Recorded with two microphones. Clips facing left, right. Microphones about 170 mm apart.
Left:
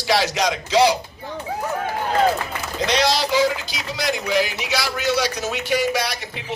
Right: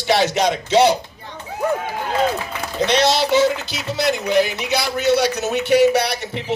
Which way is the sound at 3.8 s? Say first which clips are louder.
Right 4 dB; 60° right (ahead or behind).